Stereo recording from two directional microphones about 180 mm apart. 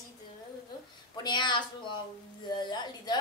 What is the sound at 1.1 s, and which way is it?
A woman's voice, 25° left (ahead or behind).